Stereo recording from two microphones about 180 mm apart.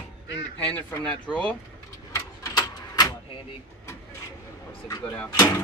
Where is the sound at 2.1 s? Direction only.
20° left (ahead or behind).